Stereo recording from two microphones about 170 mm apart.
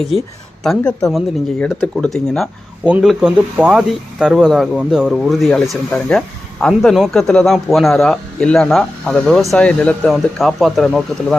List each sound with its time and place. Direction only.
0.6 s speech: centre (ahead or behind)